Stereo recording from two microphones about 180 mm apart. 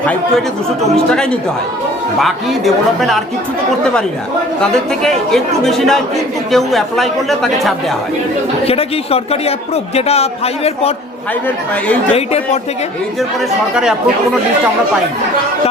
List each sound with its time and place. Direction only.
0.0 s speech: 10° left (ahead or behind)
4.6 s speech: 5° left (ahead or behind)
8.6 s a man's voice: 35° left (ahead or behind)